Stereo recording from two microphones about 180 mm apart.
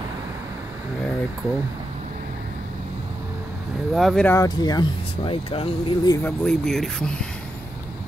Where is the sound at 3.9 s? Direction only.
Centre (ahead or behind).